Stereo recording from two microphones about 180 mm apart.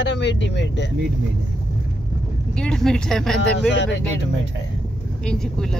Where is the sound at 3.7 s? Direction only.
85° left.